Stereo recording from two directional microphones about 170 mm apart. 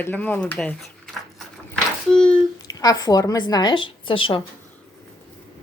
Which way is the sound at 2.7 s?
20° left (ahead or behind).